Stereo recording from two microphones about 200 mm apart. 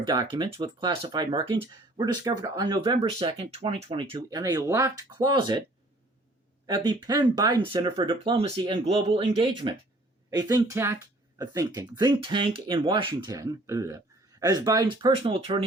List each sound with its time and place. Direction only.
0.0 s speech: 20° right (ahead or behind)
6.8 s speech: 20° right (ahead or behind)